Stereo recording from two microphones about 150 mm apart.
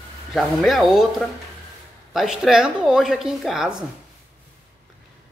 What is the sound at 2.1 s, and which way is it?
Speech, centre (ahead or behind).